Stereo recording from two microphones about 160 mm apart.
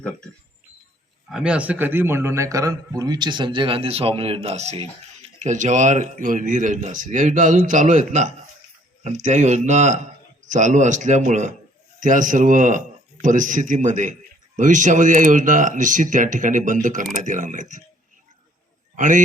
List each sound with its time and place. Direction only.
1.3 s a man's voice: 5° right (ahead or behind); by 17.8 s 50° right (ahead or behind)
18.9 s a man's voice: 55° right (ahead or behind)